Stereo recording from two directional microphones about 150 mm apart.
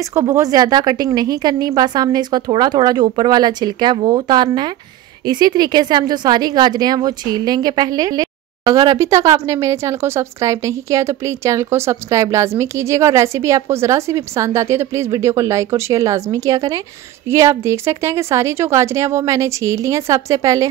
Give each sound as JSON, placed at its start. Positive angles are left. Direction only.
{"t": 0.0, "sound": "a woman's voice", "side_deg": -20}